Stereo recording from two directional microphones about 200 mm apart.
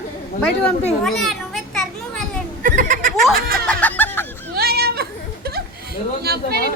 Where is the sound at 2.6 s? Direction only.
40° right (ahead or behind).